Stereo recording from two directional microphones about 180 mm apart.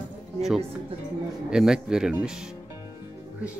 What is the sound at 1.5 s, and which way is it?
Speech, 5° right (ahead or behind).